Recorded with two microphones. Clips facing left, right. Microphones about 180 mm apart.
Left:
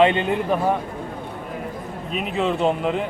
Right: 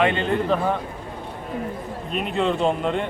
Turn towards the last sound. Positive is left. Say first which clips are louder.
# left 1 dB
turn(degrees=5)  # may be behind; listen again after turning